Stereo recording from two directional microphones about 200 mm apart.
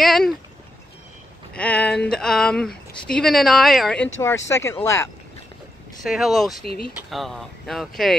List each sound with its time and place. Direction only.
0.0 s speech: centre (ahead or behind)
1.5 s speech: 5° left (ahead or behind)
4.2 s speech: 15° left (ahead or behind)
6.0 s speech: centre (ahead or behind)